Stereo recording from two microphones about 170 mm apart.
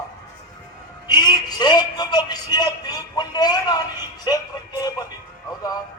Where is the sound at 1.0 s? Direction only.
25° left (ahead or behind).